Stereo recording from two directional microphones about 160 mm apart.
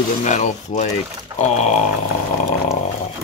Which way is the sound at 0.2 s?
50° left (ahead or behind).